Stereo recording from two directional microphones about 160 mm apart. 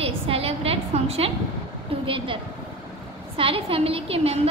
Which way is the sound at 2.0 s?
35° right (ahead or behind).